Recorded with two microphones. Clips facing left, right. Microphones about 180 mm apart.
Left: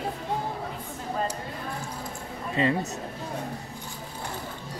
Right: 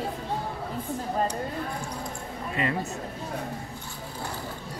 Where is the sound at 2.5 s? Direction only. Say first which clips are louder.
Left 4 dB; 25° left (ahead or behind).